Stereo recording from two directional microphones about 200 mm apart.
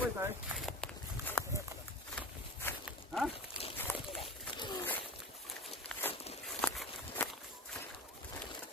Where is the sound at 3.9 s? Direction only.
15° left (ahead or behind).